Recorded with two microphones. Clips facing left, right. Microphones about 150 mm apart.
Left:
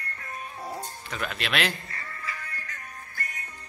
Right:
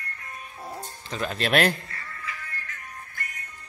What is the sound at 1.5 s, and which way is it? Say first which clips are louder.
Speech: right 7 dB; 50° right (ahead or behind).